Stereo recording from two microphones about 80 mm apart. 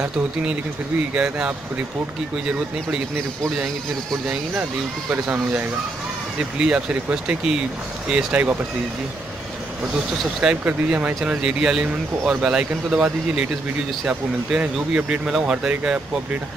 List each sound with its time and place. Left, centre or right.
1.1 s speech: centre
5.3 s speech: right
10.4 s speech: centre